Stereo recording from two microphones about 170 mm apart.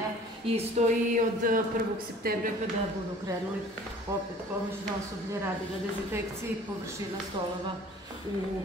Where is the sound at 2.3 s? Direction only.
60° right (ahead or behind).